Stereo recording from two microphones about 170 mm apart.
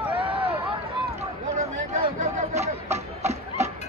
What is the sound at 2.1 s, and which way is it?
Chatter, 40° right (ahead or behind).